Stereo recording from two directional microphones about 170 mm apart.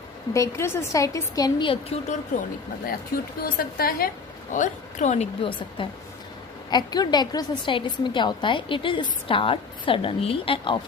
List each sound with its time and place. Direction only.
0.3 s a woman's voice: 15° left (ahead or behind); by 2.4 s 40° left (ahead or behind)
3.4 s a woman's voice: 60° left (ahead or behind)
4.5 s a woman's voice: 45° left (ahead or behind)